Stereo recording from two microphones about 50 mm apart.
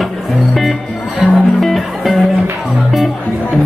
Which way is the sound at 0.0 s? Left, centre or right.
Centre.